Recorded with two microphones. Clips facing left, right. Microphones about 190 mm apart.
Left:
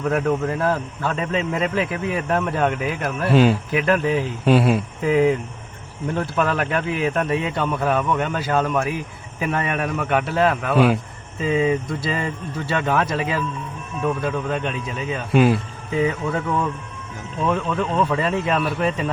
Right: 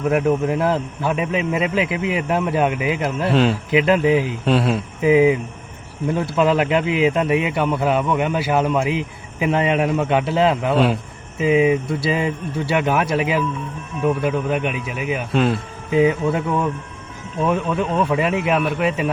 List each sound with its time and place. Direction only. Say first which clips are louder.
0.0 s a man's voice: right 3 dB; 10° right (ahead or behind)
3.3 s speech: left 3 dB; 5° left (ahead or behind)
3.7 s a man's voice: right 4 dB; 15° right (ahead or behind)
4.4 s speech: left 4 dB; 5° left (ahead or behind)
4.9 s a man's voice: right 6 dB; 10° right (ahead or behind)
15.3 s speech: left 3 dB; 5° left (ahead or behind)
15.9 s a man's voice: right 5 dB; 15° right (ahead or behind)